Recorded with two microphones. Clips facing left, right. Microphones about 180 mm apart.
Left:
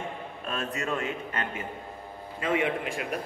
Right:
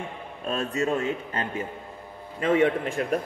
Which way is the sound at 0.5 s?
30° right (ahead or behind).